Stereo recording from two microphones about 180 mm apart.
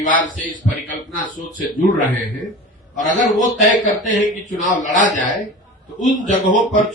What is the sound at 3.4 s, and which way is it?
A man's voice, 45° left (ahead or behind).